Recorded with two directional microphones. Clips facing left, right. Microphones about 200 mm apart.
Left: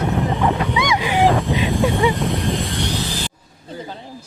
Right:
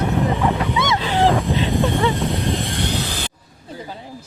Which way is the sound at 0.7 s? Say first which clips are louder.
Left 1 dB; 15° left (ahead or behind).